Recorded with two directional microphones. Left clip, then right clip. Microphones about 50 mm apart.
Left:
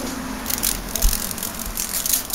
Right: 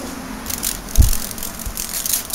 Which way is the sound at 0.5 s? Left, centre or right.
Left.